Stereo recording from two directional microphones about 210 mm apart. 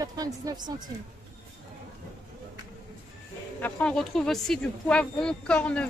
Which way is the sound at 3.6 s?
5° left (ahead or behind).